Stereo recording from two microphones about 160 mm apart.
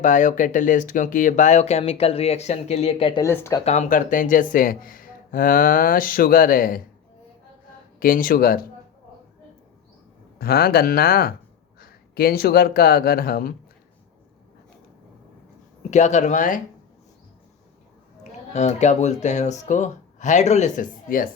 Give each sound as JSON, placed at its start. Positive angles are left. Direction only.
{"t": 0.0, "sound": "speech", "side_deg": 55}
{"t": 3.2, "sound": "speech", "side_deg": 20}
{"t": 3.6, "sound": "speech", "side_deg": 45}
{"t": 7.9, "sound": "speech", "side_deg": 60}
{"t": 10.3, "sound": "speech", "side_deg": 75}
{"t": 15.9, "sound": "speech", "side_deg": 45}
{"t": 18.2, "sound": "speech", "side_deg": 45}